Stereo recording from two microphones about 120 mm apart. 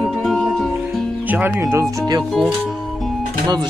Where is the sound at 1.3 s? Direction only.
20° right (ahead or behind).